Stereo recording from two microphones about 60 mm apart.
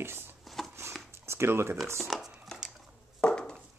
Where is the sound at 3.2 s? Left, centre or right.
Centre.